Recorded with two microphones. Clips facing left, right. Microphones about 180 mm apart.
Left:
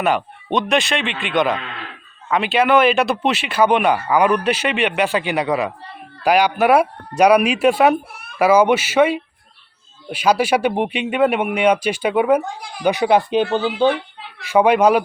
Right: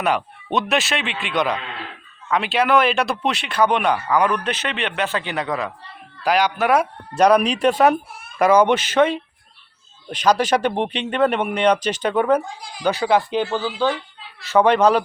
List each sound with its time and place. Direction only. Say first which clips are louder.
0.0 s speech: left 2 dB; centre (ahead or behind)
12.5 s speech: left 4 dB; 60° left (ahead or behind)
12.8 s speech: left 3 dB; 15° left (ahead or behind)
13.8 s a sound: left 5 dB; 60° left (ahead or behind)
14.4 s speech: left 2 dB; 10° left (ahead or behind)